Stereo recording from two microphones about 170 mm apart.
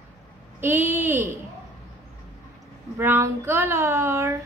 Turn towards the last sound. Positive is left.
turn(degrees=-15)  # may be behind; listen again after turning